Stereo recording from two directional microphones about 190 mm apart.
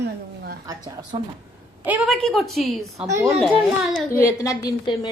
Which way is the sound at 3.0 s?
15° right (ahead or behind).